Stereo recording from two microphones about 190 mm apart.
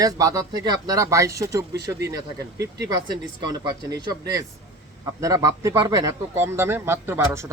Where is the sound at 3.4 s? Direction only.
20° right (ahead or behind).